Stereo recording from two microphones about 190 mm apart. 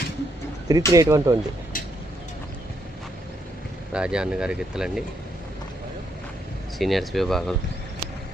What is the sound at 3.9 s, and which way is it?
Speech, 5° right (ahead or behind).